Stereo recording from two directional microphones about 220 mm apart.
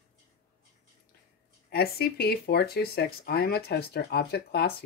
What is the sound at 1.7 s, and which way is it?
Speech, 45° left (ahead or behind).